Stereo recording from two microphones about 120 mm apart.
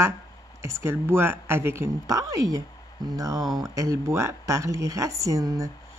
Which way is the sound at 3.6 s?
25° right (ahead or behind).